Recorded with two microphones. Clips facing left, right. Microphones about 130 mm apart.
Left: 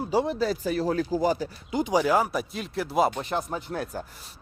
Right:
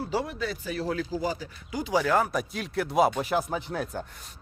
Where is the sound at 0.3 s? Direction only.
35° left (ahead or behind).